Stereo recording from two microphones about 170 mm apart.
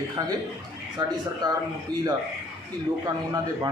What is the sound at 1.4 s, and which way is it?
Speech, 25° right (ahead or behind).